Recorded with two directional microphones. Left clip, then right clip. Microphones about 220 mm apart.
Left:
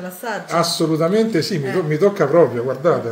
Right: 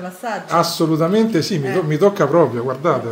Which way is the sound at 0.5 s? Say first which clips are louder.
Right 2 dB; 15° right (ahead or behind).